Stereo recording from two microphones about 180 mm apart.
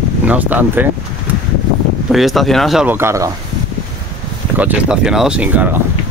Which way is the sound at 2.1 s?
Centre (ahead or behind).